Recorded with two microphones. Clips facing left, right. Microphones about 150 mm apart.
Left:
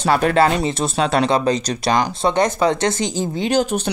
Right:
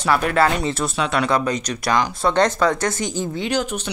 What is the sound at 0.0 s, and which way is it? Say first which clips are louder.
Speech: left 3 dB; 30° left (ahead or behind).